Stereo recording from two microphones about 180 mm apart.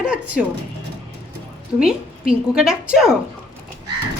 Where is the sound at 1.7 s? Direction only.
5° right (ahead or behind).